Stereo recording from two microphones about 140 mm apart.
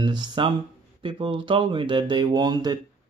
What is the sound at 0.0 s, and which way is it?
Speech, 30° right (ahead or behind).